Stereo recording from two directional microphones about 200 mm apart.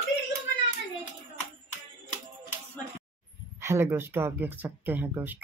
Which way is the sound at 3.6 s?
10° right (ahead or behind).